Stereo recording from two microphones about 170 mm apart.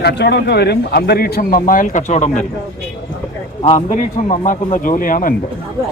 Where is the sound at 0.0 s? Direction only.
80° left; by 2.4 s 45° left (ahead or behind).